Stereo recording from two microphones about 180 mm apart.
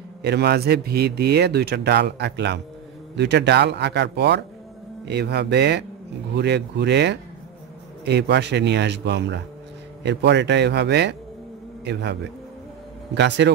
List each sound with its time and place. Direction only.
0.2 s a man's voice: 65° right (ahead or behind)